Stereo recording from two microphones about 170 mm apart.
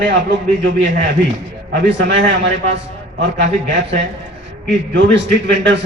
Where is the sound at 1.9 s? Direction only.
90° right.